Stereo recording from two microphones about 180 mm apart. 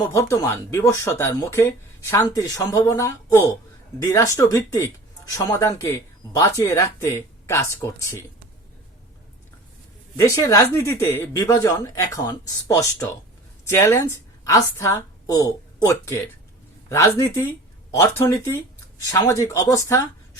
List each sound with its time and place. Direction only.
0.1 s speech: 15° left (ahead or behind)
10.2 s a woman's voice: 20° left (ahead or behind)